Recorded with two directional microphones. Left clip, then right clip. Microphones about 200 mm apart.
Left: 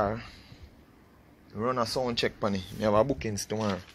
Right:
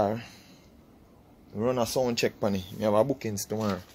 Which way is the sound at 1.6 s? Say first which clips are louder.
Right 2 dB; 25° right (ahead or behind).